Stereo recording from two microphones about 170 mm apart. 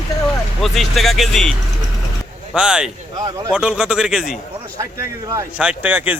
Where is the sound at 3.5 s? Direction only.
5° right (ahead or behind).